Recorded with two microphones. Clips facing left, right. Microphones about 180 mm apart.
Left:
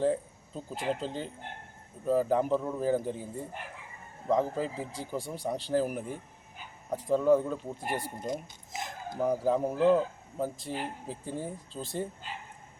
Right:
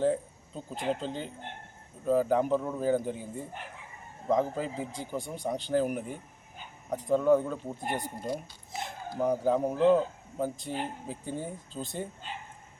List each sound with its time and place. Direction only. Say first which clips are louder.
0.0 s a man's voice: right 1 dB; centre (ahead or behind)
4.3 s a man's voice: even; centre (ahead or behind)
8.3 s speech: even; 20° left (ahead or behind)
9.2 s a man's voice: right 1 dB; 5° left (ahead or behind)